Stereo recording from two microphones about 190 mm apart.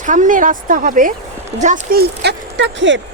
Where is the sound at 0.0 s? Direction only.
40° right (ahead or behind).